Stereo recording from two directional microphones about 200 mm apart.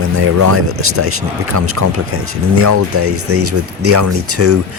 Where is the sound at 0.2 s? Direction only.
90° right.